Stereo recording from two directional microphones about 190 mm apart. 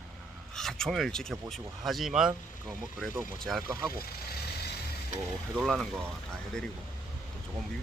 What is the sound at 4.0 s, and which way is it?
Speech, 55° left (ahead or behind).